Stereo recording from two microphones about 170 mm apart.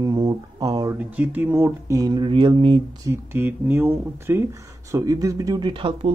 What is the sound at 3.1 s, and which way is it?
Speech, 10° right (ahead or behind).